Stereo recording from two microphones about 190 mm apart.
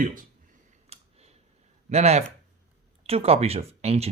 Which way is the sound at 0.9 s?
35° right (ahead or behind).